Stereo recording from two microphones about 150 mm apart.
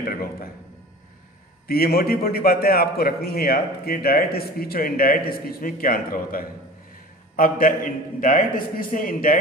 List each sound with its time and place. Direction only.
0.0 s speech: 80° left
1.7 s a man's voice: 90° left; by 9.4 s 65° left (ahead or behind)